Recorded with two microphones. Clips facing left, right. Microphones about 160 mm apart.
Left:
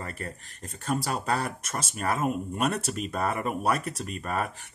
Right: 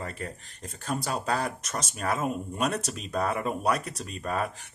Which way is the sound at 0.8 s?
Centre (ahead or behind).